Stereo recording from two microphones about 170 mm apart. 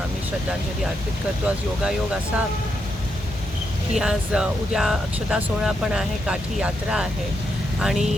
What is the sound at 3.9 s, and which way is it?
Speech, 5° right (ahead or behind).